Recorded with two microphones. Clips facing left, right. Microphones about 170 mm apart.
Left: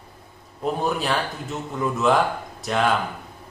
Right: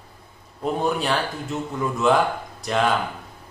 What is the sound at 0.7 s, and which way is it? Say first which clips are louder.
Speech: right 2 dB; centre (ahead or behind).